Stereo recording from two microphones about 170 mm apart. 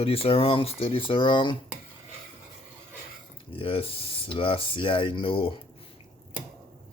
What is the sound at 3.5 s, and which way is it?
Speech, 35° left (ahead or behind).